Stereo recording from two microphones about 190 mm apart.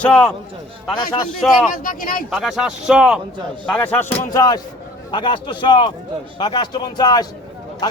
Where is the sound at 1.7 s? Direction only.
45° left (ahead or behind).